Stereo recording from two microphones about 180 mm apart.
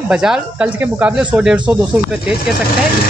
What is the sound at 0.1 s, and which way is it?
Speech, 5° right (ahead or behind).